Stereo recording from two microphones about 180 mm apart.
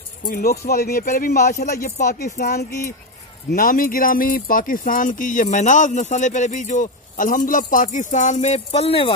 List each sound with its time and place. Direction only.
0.3 s speech: 55° left (ahead or behind); by 9.1 s 35° left (ahead or behind)